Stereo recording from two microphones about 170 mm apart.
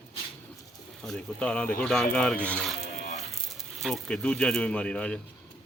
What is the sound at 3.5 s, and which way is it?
Speech, centre (ahead or behind).